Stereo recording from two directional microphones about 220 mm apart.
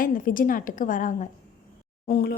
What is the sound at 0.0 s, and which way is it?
A woman's voice, 40° left (ahead or behind).